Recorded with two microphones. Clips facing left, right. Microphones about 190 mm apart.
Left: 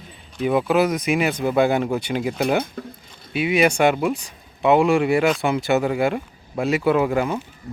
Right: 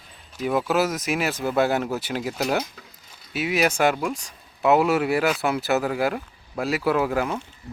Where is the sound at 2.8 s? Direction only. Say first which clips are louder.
Left 15 dB; 50° left (ahead or behind).